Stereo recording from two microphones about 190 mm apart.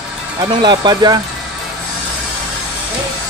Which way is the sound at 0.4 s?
25° right (ahead or behind).